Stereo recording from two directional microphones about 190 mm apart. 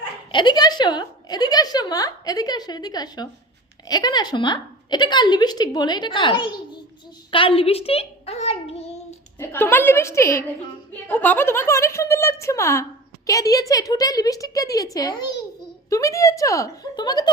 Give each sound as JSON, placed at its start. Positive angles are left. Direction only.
{"t": 0.3, "sound": "a woman's voice", "side_deg": 25}
{"t": 9.4, "sound": "a woman's voice", "side_deg": 10}